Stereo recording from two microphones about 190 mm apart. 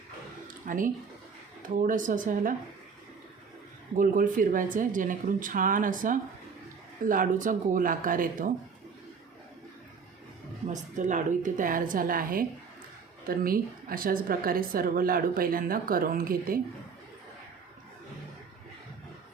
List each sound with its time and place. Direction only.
0.4 s a sound: 45° right (ahead or behind)
1.8 s a woman's voice: 45° right (ahead or behind)
3.9 s a woman's voice: 45° right (ahead or behind)
10.7 s a woman's voice: 40° right (ahead or behind)